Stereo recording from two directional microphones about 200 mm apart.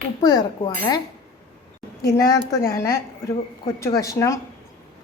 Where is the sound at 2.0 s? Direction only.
15° left (ahead or behind).